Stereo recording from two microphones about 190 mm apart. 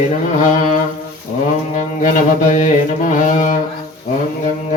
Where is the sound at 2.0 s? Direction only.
40° left (ahead or behind).